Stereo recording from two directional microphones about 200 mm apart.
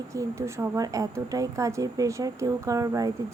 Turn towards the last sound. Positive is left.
turn(degrees=-15)  # may be behind; listen again after turning